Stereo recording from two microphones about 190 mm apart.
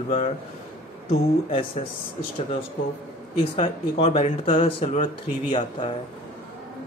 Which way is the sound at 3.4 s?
30° left (ahead or behind).